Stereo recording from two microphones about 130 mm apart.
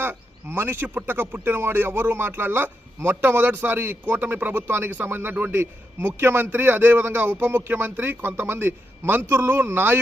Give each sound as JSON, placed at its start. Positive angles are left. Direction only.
{"t": 0.0, "sound": "speech", "side_deg": -15}